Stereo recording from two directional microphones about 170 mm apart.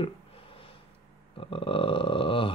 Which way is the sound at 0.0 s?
35° left (ahead or behind).